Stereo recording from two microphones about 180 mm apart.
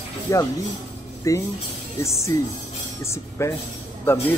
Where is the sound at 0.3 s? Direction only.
15° left (ahead or behind).